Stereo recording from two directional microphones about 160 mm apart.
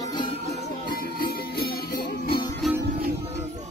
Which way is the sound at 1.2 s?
70° left (ahead or behind).